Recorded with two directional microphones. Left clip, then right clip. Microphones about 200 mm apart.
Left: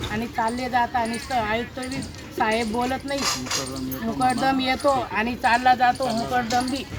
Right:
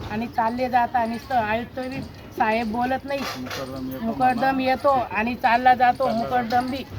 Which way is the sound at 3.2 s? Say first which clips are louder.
Left 4 dB; 50° right (ahead or behind).